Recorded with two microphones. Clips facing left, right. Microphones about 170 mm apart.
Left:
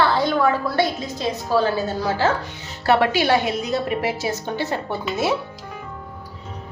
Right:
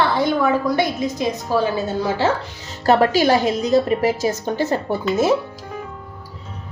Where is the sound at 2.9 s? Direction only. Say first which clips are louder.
Right 3 dB; 40° right (ahead or behind).